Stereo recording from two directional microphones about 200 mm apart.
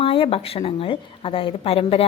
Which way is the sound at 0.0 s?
25° left (ahead or behind).